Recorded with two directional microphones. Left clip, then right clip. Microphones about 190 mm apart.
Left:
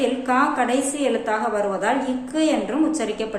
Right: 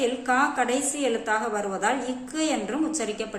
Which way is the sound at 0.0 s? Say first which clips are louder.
Left 3 dB; 20° right (ahead or behind).